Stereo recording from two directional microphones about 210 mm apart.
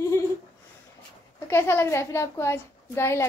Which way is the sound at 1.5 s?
10° left (ahead or behind).